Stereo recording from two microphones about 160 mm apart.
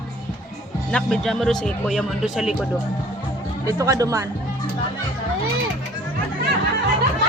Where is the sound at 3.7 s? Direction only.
20° right (ahead or behind).